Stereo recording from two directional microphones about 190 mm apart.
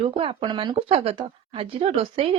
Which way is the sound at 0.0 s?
30° right (ahead or behind).